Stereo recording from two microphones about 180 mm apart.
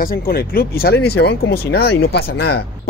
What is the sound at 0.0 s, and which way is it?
Speech, 55° left (ahead or behind).